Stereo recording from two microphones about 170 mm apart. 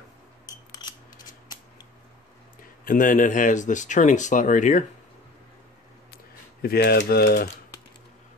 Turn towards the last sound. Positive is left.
turn(degrees=65)  # may be behind; listen again after turning